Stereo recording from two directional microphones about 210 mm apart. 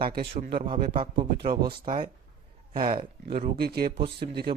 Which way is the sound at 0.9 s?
25° right (ahead or behind).